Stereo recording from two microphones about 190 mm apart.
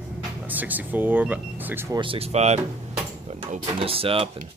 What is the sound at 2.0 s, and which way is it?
Speech, 30° right (ahead or behind).